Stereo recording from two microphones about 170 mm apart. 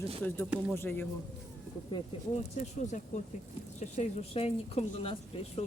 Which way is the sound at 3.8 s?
45° left (ahead or behind).